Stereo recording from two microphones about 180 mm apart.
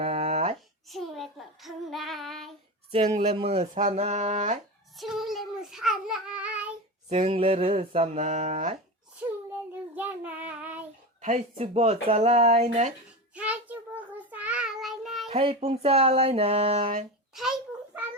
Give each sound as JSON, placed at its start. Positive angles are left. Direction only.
{"t": 0.0, "sound": "a sound", "side_deg": -35}
{"t": 0.9, "sound": "child singing", "side_deg": 0}
{"t": 3.2, "sound": "speech", "side_deg": -35}
{"t": 4.9, "sound": "child singing", "side_deg": 0}
{"t": 7.1, "sound": "speech", "side_deg": -30}
{"t": 9.9, "sound": "child singing", "side_deg": -10}
{"t": 11.2, "sound": "speech", "side_deg": -40}
{"t": 13.3, "sound": "child singing", "side_deg": -5}
{"t": 15.3, "sound": "speech", "side_deg": -35}